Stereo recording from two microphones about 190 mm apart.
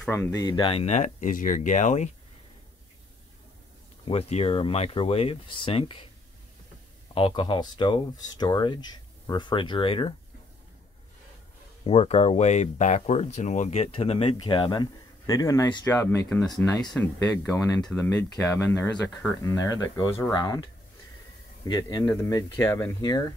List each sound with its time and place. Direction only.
0.0 s speech: 10° left (ahead or behind); by 2.0 s 40° left (ahead or behind)
4.1 s speech: 30° left (ahead or behind)
7.2 s speech: 25° left (ahead or behind)
11.8 s speech: 30° left (ahead or behind)
21.6 s speech: 20° left (ahead or behind)